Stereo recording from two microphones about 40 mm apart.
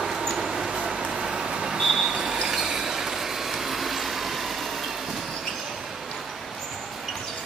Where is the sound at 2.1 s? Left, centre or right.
Centre.